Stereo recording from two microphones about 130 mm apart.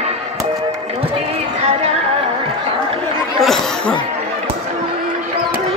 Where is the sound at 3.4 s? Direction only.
5° left (ahead or behind).